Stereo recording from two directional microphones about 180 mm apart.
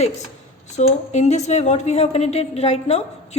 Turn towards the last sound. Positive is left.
turn(degrees=35)  # may be behind; listen again after turning